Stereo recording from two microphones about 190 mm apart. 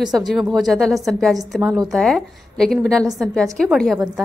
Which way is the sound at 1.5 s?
5° right (ahead or behind).